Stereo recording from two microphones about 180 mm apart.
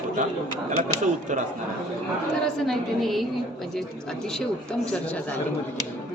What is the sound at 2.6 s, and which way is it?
Speech, centre (ahead or behind).